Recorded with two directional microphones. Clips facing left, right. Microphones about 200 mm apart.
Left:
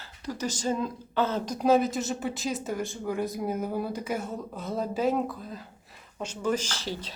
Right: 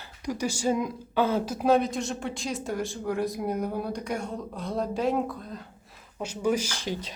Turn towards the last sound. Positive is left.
turn(degrees=-15)  # may be behind; listen again after turning